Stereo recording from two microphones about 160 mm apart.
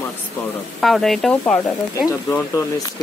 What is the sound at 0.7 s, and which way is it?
Speech, centre (ahead or behind).